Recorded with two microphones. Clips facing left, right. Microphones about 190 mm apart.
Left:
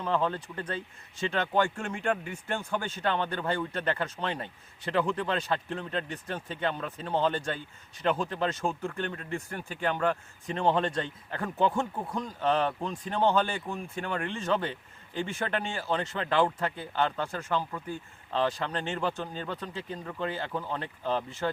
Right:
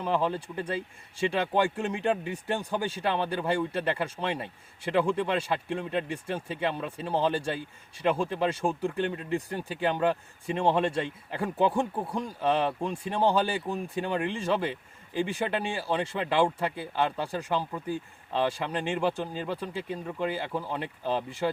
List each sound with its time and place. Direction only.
0.0 s speech: 10° right (ahead or behind)